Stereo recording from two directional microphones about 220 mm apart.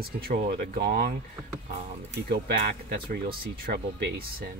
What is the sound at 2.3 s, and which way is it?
Speech, 45° right (ahead or behind).